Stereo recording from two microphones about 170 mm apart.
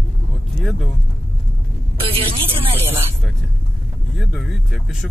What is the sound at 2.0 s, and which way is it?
Speech, 35° right (ahead or behind).